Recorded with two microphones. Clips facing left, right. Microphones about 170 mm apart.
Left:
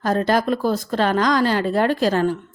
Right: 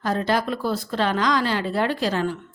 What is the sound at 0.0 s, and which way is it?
A woman's voice, 45° left (ahead or behind).